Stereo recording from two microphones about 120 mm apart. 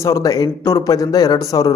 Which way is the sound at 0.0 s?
30° left (ahead or behind).